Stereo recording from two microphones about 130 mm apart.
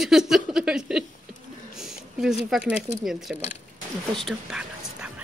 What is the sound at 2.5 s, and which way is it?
Speech, 10° right (ahead or behind).